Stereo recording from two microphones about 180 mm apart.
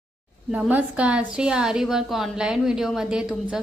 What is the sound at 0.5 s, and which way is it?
A woman's voice, 5° right (ahead or behind).